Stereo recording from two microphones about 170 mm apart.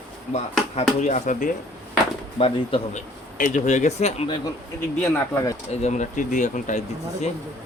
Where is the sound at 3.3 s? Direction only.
45° left (ahead or behind).